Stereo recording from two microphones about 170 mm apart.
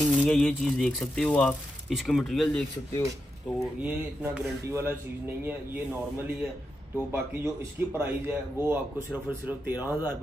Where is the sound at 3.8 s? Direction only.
10° right (ahead or behind).